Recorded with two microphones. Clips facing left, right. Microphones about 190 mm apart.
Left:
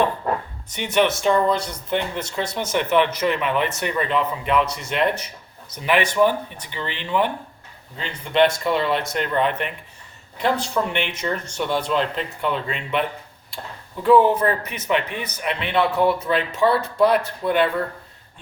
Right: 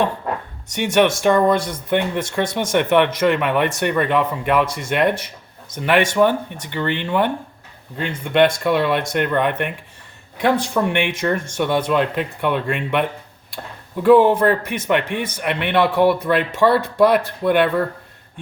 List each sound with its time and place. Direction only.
1.2 s speech: 55° right (ahead or behind)
14.0 s speech: 70° right (ahead or behind)